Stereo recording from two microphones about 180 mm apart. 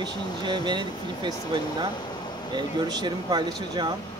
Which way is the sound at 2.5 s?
25° right (ahead or behind).